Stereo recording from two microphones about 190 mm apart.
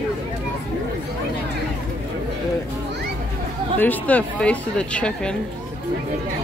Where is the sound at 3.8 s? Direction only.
10° left (ahead or behind).